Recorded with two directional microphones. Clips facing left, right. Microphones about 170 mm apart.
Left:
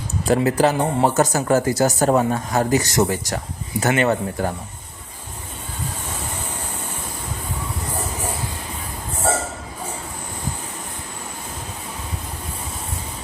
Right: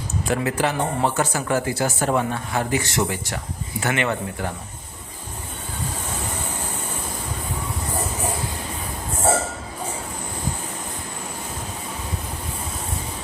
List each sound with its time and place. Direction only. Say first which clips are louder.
0.3 s speech: left 6 dB; 35° left (ahead or behind)